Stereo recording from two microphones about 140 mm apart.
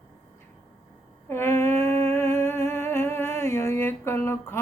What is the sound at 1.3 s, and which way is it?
Humming, 15° left (ahead or behind).